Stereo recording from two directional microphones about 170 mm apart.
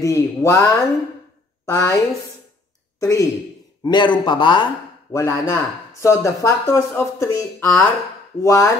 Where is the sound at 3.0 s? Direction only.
20° left (ahead or behind).